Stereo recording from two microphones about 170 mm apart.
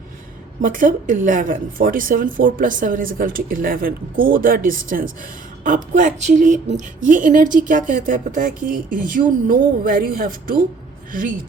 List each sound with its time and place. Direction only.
0.6 s a woman's voice: 50° right (ahead or behind)